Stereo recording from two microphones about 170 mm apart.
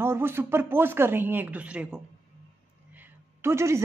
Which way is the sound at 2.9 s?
10° right (ahead or behind).